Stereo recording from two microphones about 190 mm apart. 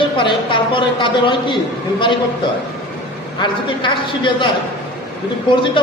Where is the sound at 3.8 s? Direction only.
25° left (ahead or behind).